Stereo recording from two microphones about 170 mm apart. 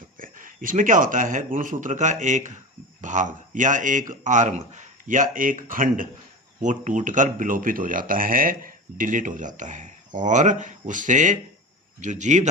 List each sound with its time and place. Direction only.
0.2 s speech: 50° right (ahead or behind)